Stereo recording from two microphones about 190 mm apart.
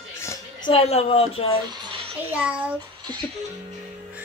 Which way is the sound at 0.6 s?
30° left (ahead or behind).